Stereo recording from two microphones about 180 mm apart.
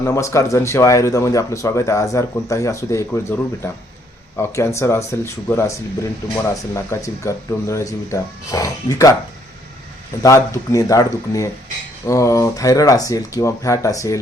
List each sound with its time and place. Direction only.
0.0 s speech: 15° left (ahead or behind)
10.2 s speech: 20° left (ahead or behind)